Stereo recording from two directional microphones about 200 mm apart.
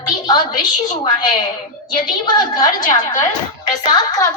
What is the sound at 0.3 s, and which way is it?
A woman's voice, 20° left (ahead or behind).